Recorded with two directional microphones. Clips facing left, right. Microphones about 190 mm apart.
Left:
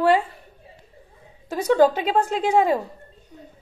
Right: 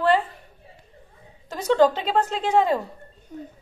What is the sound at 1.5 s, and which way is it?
A woman's voice, 10° left (ahead or behind).